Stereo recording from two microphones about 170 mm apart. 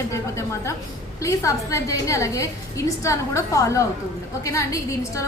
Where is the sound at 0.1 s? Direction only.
15° left (ahead or behind).